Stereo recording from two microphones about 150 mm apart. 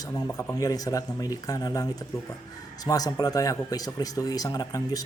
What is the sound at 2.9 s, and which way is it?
Speech, 25° left (ahead or behind).